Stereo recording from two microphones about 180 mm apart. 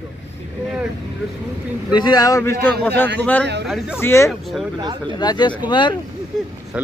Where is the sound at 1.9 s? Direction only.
25° left (ahead or behind).